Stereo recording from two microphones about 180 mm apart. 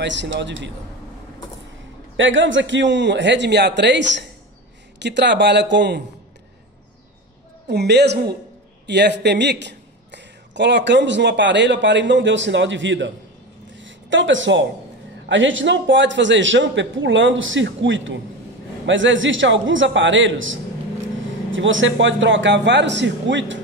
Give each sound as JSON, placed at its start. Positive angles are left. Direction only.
{"t": 0.0, "sound": "a man's voice", "side_deg": -85}
{"t": 2.1, "sound": "a man's voice", "side_deg": -90}
{"t": 7.6, "sound": "speech", "side_deg": -65}
{"t": 13.7, "sound": "a sound", "side_deg": -90}
{"t": 15.2, "sound": "a man's voice", "side_deg": -90}